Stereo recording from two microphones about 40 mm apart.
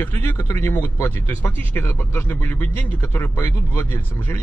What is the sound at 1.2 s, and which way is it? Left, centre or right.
Speech, left.